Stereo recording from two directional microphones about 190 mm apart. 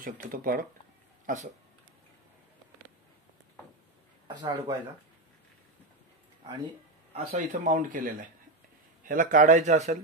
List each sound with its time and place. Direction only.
0.0 s speech: 50° right (ahead or behind)
4.3 s speech: 20° right (ahead or behind)
7.2 s speech: 40° right (ahead or behind)